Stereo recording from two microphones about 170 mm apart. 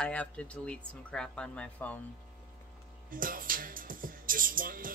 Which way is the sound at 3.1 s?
55° right (ahead or behind).